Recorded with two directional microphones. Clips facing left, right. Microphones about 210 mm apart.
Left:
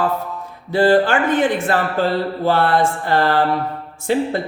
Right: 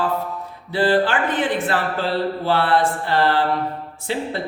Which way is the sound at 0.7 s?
45° left (ahead or behind).